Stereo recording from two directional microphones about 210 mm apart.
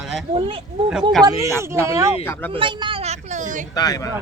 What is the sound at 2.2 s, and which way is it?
Speech, 10° left (ahead or behind).